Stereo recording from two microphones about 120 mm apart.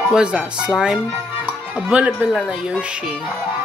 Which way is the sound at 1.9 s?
10° right (ahead or behind).